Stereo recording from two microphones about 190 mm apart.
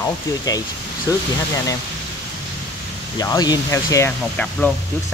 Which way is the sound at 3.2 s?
20° left (ahead or behind).